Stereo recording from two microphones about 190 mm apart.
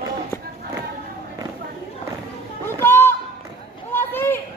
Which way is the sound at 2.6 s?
10° left (ahead or behind).